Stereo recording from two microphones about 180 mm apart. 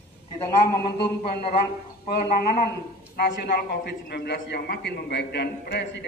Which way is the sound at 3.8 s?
65° left (ahead or behind).